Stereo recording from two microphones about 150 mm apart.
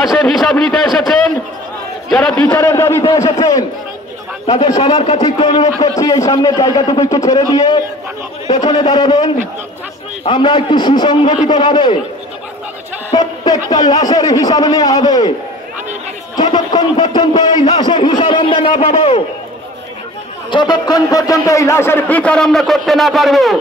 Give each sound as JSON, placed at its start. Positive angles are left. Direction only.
{"t": 0.0, "sound": "a man's voice", "side_deg": 0}
{"t": 4.6, "sound": "a man's voice", "side_deg": 30}
{"t": 13.1, "sound": "a sound", "side_deg": 25}
{"t": 13.7, "sound": "a man's voice", "side_deg": 25}
{"t": 16.3, "sound": "a sound", "side_deg": 30}
{"t": 17.6, "sound": "a man's voice", "side_deg": 30}
{"t": 20.5, "sound": "a man's voice", "side_deg": 30}